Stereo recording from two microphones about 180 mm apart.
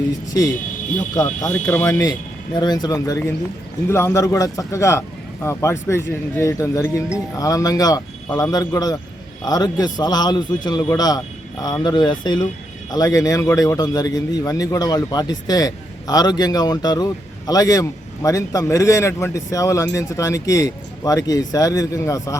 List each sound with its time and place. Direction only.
1.1 s a man's voice: 20° left (ahead or behind)